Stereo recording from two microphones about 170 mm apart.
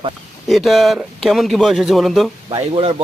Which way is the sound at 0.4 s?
Centre (ahead or behind).